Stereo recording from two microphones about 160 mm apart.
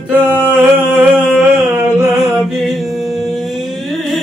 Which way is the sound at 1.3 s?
Centre (ahead or behind).